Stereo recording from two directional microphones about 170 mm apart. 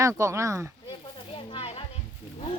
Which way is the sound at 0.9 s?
30° left (ahead or behind).